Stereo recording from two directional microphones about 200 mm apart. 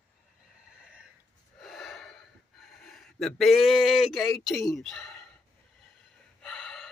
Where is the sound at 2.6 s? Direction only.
Centre (ahead or behind).